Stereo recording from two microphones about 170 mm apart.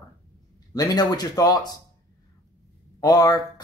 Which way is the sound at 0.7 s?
25° left (ahead or behind).